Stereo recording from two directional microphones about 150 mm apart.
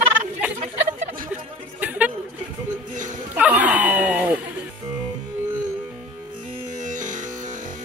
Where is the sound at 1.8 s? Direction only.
10° right (ahead or behind).